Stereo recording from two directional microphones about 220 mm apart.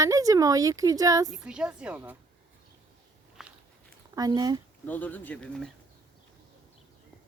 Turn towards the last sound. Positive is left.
turn(degrees=5)  # may be behind; listen again after turning